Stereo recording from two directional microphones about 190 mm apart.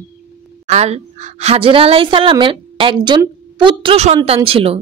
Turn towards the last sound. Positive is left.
turn(degrees=-30)  # may be behind; listen again after turning